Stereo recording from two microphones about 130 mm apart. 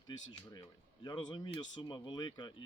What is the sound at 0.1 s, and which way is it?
A man's voice, 35° left (ahead or behind).